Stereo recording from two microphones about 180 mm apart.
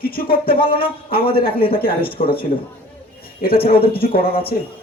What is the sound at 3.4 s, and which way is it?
Speech, 55° left (ahead or behind).